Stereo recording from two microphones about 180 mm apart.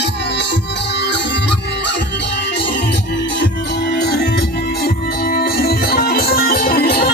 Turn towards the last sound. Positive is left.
turn(degrees=60)  # may be behind; listen again after turning